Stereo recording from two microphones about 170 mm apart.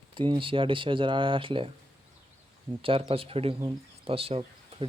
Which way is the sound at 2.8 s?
35° right (ahead or behind).